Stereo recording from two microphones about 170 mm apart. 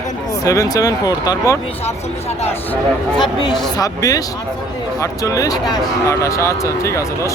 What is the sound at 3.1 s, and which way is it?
Speech, 25° left (ahead or behind).